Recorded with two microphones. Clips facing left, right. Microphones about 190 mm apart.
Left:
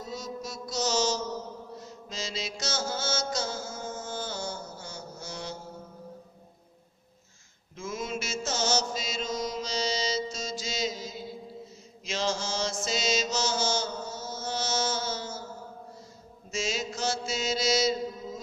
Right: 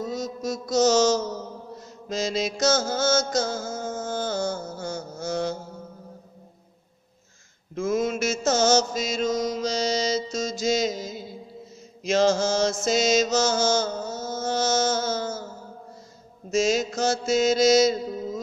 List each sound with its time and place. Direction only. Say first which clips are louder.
0.0 s mantra: right 8 dB; 45° right (ahead or behind)
7.7 s mantra: right 10 dB; 45° right (ahead or behind)
16.4 s mantra: right 10 dB; 45° right (ahead or behind)